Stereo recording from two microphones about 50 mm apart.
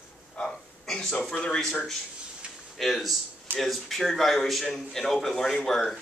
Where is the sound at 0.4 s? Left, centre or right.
Centre.